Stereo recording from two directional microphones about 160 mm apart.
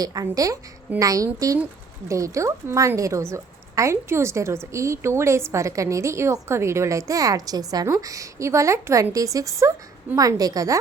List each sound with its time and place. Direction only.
0.0 s a woman's voice: 20° right (ahead or behind)